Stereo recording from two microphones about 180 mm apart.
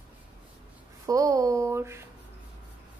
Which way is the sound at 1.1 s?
20° right (ahead or behind).